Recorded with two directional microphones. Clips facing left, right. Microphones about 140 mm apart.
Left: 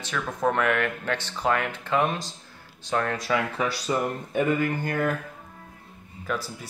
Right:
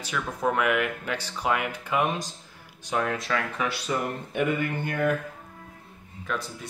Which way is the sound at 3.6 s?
30° left (ahead or behind).